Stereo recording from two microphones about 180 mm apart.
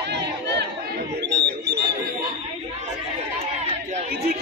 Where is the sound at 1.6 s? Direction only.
65° right (ahead or behind).